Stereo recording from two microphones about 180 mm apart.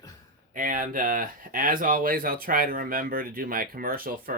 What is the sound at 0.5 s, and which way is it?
Speech, 50° right (ahead or behind).